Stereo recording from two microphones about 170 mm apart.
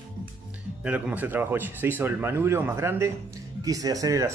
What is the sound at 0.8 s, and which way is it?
Speech, 5° right (ahead or behind).